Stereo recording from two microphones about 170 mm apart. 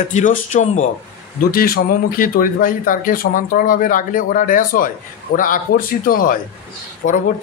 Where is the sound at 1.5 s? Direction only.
60° left (ahead or behind).